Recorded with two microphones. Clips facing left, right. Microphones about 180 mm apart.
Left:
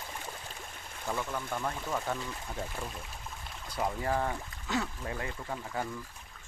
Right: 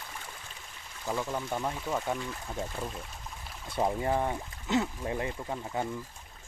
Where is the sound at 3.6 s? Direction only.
25° right (ahead or behind).